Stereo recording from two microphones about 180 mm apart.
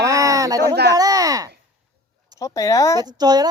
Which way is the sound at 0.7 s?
70° right (ahead or behind).